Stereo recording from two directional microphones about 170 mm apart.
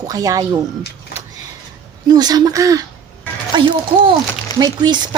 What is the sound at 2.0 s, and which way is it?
Speech, 25° right (ahead or behind).